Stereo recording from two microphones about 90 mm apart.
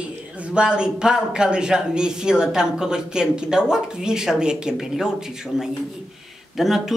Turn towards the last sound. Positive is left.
turn(degrees=-5)  # may be behind; listen again after turning